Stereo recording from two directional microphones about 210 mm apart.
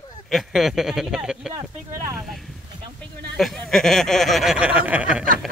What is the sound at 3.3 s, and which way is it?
Speech, centre (ahead or behind).